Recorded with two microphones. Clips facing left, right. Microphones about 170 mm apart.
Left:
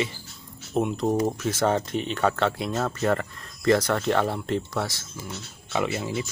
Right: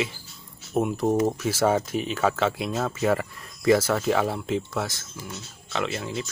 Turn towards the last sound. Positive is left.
turn(degrees=5)  # may be behind; listen again after turning